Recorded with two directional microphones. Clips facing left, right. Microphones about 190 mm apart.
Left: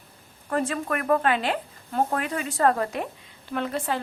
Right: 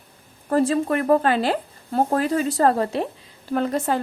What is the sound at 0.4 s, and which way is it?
Speech, 35° right (ahead or behind).